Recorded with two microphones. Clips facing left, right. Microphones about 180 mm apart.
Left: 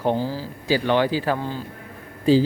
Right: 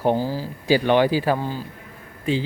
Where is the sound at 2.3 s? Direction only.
35° left (ahead or behind).